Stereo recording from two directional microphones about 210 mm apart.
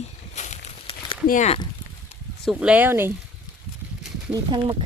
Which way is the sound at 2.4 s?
Centre (ahead or behind).